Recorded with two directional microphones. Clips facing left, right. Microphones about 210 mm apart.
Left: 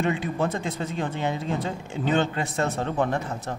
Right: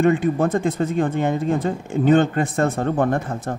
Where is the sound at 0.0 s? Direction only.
50° right (ahead or behind).